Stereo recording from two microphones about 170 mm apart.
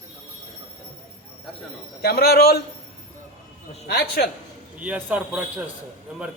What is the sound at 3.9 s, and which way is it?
Speech, 65° left (ahead or behind).